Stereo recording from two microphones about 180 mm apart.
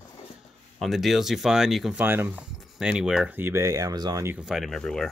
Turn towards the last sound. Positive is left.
turn(degrees=5)  # may be behind; listen again after turning